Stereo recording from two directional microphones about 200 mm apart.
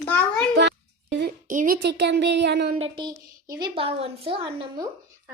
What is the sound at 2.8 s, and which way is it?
A woman's voice, 20° right (ahead or behind).